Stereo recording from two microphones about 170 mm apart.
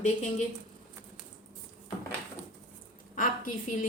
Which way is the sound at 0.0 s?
45° left (ahead or behind).